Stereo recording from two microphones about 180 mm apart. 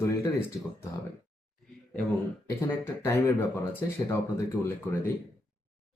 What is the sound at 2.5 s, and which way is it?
Speech, 15° left (ahead or behind).